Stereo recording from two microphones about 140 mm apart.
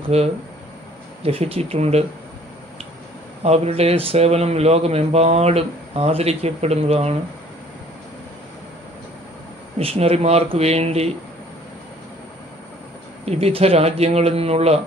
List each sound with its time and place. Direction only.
0.1 s speech: 50° right (ahead or behind)
3.4 s speech: 50° right (ahead or behind)
9.8 s speech: 45° right (ahead or behind)
13.2 s speech: 45° right (ahead or behind)